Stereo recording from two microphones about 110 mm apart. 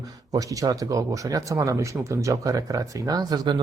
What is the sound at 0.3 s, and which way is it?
Speech, 35° right (ahead or behind).